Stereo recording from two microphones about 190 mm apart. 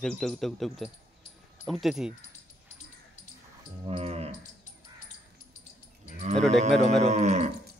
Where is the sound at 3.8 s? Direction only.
30° right (ahead or behind).